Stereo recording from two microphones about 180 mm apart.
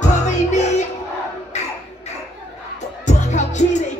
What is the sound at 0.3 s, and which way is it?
Music, 40° left (ahead or behind).